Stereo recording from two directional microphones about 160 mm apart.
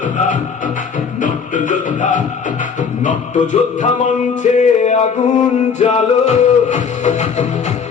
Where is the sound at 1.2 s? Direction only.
55° left (ahead or behind).